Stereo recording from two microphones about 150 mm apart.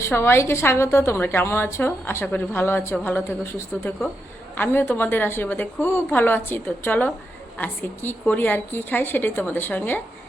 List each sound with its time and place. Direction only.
0.1 s a woman's voice: 15° left (ahead or behind)